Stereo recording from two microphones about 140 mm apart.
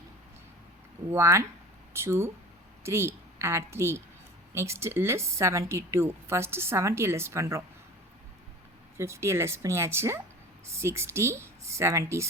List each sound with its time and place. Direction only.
1.1 s speech: 20° right (ahead or behind)
9.0 s speech: 20° right (ahead or behind)